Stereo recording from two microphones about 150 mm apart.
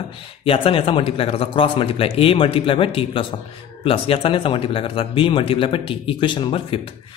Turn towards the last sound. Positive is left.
turn(degrees=35)  # may be behind; listen again after turning